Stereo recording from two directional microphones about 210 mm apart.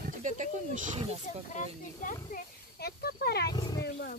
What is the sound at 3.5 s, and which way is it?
Speech, 20° left (ahead or behind).